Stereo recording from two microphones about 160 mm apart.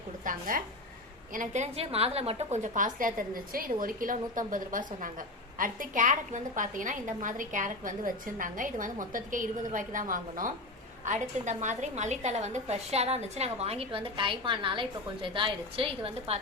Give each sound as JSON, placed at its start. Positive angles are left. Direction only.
{"t": 0.3, "sound": "a woman's voice", "side_deg": -60}